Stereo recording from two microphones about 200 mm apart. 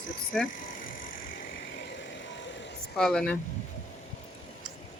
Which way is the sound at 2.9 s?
5° left (ahead or behind).